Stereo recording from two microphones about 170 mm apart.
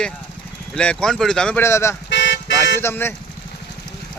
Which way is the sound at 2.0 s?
90° left.